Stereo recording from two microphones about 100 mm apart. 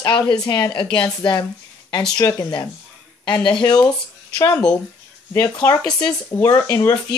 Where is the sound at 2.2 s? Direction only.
35° left (ahead or behind).